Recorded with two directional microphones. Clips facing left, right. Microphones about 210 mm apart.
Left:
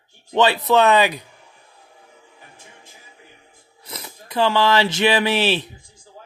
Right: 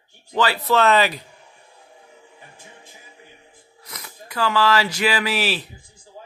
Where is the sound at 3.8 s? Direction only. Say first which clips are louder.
Left 4 dB; 25° left (ahead or behind).